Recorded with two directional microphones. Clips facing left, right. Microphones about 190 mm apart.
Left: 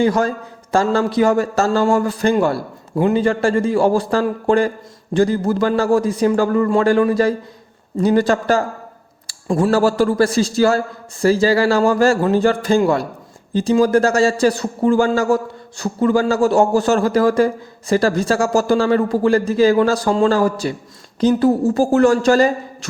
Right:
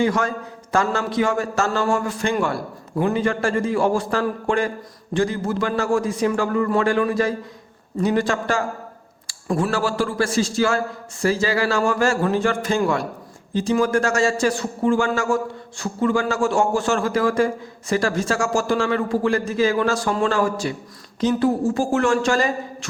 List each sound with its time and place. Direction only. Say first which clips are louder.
0.0 s a man's voice: left 4 dB; 35° left (ahead or behind)